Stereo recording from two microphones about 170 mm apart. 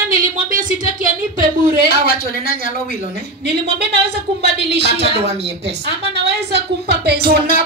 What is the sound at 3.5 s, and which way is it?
A woman's voice, 80° right.